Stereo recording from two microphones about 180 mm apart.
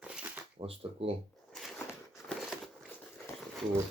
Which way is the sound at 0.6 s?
30° right (ahead or behind).